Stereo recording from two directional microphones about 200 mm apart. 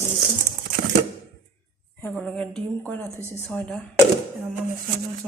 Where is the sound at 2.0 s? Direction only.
5° left (ahead or behind).